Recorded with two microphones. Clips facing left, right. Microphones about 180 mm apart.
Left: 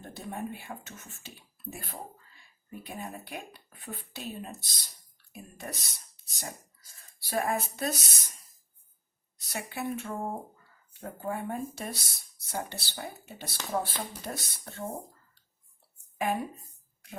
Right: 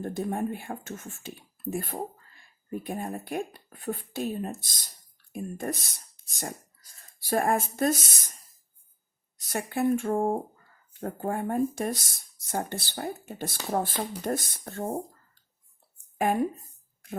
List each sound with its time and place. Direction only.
0.0 s speech: 50° right (ahead or behind)
9.5 s speech: 50° right (ahead or behind)
16.1 s speech: 50° right (ahead or behind)